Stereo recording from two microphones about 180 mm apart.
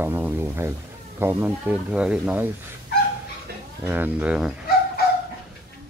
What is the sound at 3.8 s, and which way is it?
Speech, 10° right (ahead or behind).